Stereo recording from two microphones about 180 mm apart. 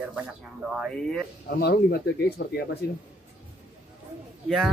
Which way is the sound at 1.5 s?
60° left (ahead or behind).